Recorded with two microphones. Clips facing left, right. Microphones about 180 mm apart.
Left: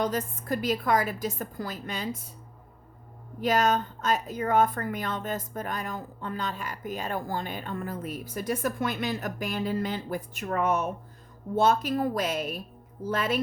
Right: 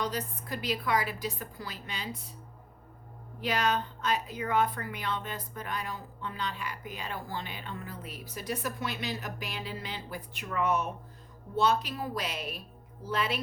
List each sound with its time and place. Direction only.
0.0 s speech: 50° left (ahead or behind)
3.4 s speech: 45° left (ahead or behind)